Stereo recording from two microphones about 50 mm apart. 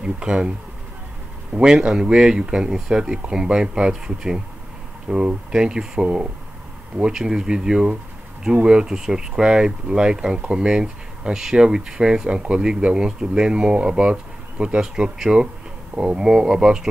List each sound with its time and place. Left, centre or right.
0.0 s speech: centre
1.6 s speech: centre
15.9 s speech: right
16.2 s speech: centre